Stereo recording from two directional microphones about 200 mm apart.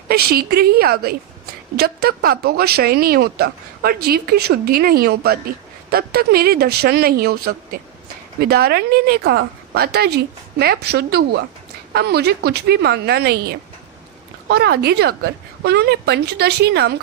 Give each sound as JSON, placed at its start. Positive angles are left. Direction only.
{"t": 0.1, "sound": "a woman's voice", "side_deg": -50}